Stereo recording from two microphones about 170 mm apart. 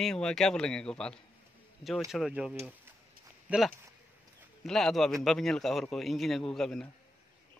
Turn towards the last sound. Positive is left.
turn(degrees=0)  # may be behind; listen again after turning